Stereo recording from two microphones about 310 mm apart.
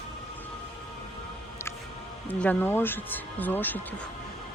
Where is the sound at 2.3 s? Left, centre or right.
Centre.